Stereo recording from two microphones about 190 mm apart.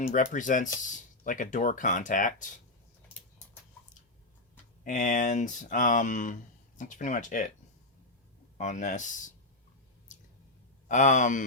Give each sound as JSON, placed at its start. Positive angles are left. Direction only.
{"t": 0.0, "sound": "speech", "side_deg": 45}
{"t": 4.8, "sound": "speech", "side_deg": 40}
{"t": 8.5, "sound": "speech", "side_deg": 40}
{"t": 10.1, "sound": "squish", "side_deg": 40}
{"t": 10.8, "sound": "speech", "side_deg": 40}